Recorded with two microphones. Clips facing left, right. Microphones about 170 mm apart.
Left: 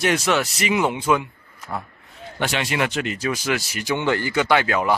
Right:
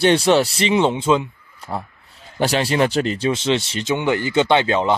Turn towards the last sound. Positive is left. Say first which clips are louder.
# right 3 dB
turn(degrees=-25)  # may be behind; listen again after turning